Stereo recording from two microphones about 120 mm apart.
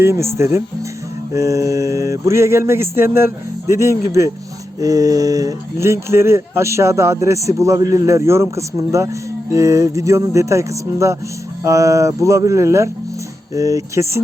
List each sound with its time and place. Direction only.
0.0 s speech: 20° right (ahead or behind)